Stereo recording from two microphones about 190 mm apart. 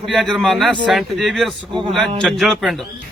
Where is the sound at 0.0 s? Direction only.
Centre (ahead or behind).